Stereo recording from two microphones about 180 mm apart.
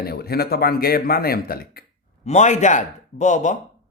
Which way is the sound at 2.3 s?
40° left (ahead or behind).